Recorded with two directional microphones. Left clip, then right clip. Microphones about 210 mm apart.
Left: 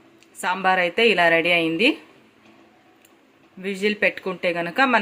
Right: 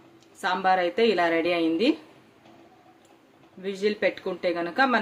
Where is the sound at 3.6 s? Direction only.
15° left (ahead or behind).